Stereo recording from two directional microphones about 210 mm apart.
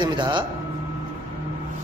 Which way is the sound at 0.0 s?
20° right (ahead or behind).